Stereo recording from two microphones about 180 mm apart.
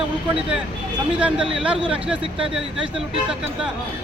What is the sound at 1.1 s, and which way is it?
Speech, 5° right (ahead or behind).